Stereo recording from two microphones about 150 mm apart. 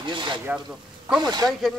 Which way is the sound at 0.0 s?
30° right (ahead or behind).